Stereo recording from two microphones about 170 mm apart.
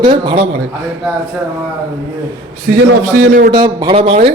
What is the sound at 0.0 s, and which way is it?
Speech, 30° right (ahead or behind).